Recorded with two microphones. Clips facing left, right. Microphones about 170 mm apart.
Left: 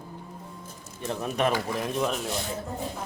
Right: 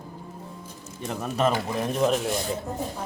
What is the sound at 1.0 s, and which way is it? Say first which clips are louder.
Speech: right 1 dB; 15° right (ahead or behind).